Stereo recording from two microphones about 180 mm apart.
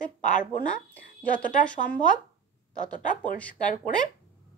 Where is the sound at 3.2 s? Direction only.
5° left (ahead or behind).